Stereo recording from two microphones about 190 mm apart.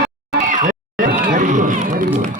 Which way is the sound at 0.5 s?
45° right (ahead or behind).